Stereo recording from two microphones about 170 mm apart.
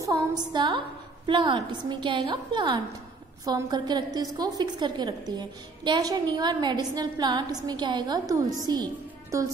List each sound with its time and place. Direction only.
0.0 s a woman's voice: 20° right (ahead or behind)